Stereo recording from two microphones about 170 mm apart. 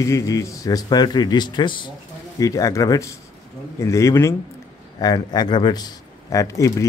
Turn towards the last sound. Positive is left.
turn(degrees=20)  # may be behind; listen again after turning